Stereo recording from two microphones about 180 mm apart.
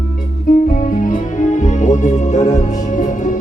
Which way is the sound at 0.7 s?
45° left (ahead or behind).